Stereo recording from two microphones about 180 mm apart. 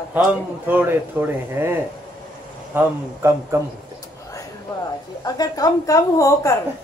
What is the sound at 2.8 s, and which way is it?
Speech, 10° right (ahead or behind).